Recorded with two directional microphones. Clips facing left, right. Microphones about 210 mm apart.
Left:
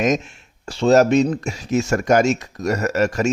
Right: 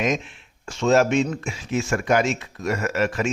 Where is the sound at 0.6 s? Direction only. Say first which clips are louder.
Left 4 dB; 35° left (ahead or behind).